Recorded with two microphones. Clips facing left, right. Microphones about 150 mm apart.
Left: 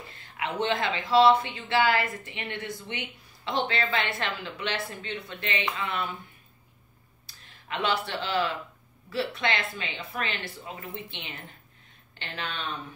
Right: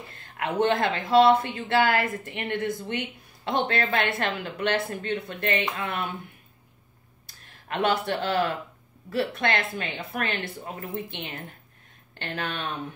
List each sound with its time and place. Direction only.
0.6 s speech: 50° right (ahead or behind)
7.2 s speech: 50° right (ahead or behind)